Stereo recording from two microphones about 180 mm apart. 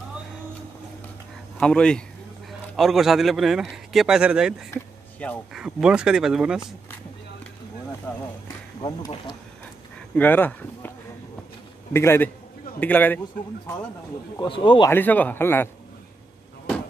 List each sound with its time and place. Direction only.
1.6 s speech: 5° left (ahead or behind)
8.1 s a sound: 10° left (ahead or behind)
10.1 s a man's voice: 10° left (ahead or behind)
11.9 s a man's voice: 15° left (ahead or behind)
14.4 s speech: 25° left (ahead or behind)
14.9 s a man's voice: 10° left (ahead or behind)